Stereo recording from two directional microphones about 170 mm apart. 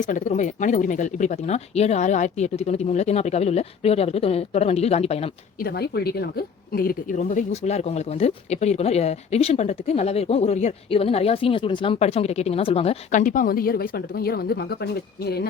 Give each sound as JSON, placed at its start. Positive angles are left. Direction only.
{"t": 0.0, "sound": "speech", "side_deg": 45}
{"t": 5.6, "sound": "a woman's voice", "side_deg": 70}
{"t": 7.2, "sound": "a woman's voice", "side_deg": 45}